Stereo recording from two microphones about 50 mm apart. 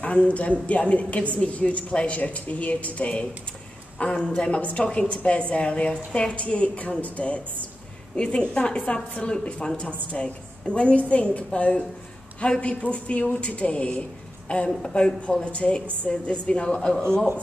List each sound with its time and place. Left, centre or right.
0.0 s speech: left
14.7 s a woman's voice: centre
15.4 s a woman's voice: left